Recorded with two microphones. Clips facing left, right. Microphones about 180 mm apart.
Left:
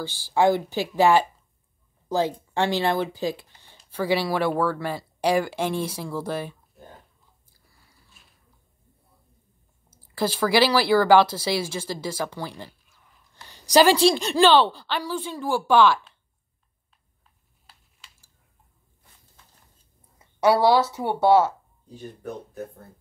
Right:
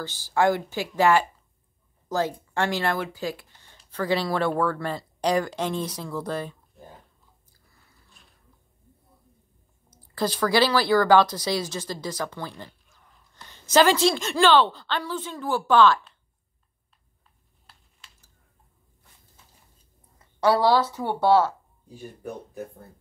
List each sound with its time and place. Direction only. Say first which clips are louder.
0.0 s speech: left 2 dB; 15° left (ahead or behind)
8.2 s a sound: right 3 dB; 5° left (ahead or behind)
9.8 s speech: left 1 dB; 10° left (ahead or behind)
20.2 s a sound: left 2 dB; 10° left (ahead or behind)
20.9 s speech: left 2 dB; 15° left (ahead or behind)
21.8 s speech: left 1 dB; 10° right (ahead or behind)